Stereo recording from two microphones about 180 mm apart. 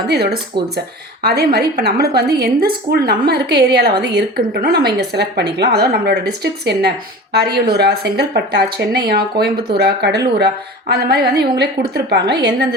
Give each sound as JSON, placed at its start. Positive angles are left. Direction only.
{"t": 0.1, "sound": "a woman's voice", "side_deg": -65}